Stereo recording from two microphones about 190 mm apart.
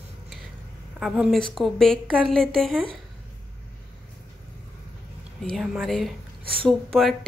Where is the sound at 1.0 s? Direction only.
5° right (ahead or behind).